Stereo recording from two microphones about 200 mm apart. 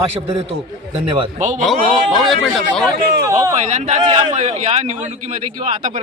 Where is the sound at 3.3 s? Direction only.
15° right (ahead or behind).